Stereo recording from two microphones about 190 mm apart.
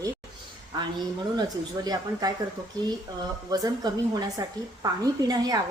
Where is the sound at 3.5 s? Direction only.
20° right (ahead or behind).